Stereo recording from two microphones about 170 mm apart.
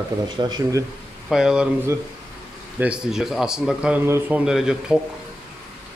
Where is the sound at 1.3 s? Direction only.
5° right (ahead or behind).